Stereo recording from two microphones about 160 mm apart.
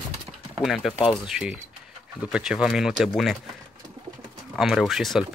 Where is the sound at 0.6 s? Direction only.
Centre (ahead or behind).